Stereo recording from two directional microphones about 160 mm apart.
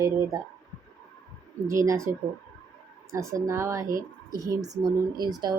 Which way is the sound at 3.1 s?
20° right (ahead or behind).